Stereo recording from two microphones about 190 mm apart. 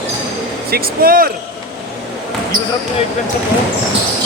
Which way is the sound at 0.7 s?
50° right (ahead or behind).